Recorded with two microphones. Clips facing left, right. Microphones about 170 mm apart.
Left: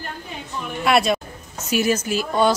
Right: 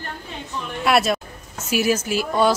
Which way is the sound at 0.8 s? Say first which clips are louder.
Even; centre (ahead or behind).